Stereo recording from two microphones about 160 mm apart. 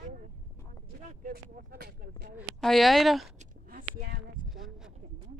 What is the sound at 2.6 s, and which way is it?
Speech, centre (ahead or behind).